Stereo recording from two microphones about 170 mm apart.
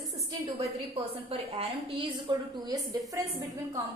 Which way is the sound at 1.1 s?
35° right (ahead or behind).